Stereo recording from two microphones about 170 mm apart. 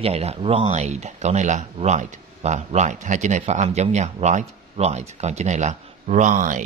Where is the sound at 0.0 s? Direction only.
35° right (ahead or behind).